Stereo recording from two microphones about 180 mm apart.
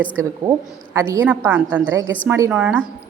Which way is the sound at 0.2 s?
15° right (ahead or behind).